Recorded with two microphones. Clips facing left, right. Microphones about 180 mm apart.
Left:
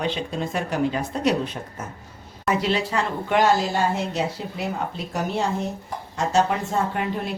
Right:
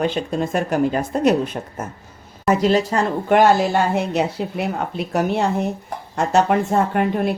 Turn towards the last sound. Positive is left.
turn(degrees=-55)  # may be behind; listen again after turning